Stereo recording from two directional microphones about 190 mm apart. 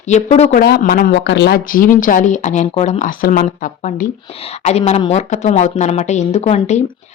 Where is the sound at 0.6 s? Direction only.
55° left (ahead or behind).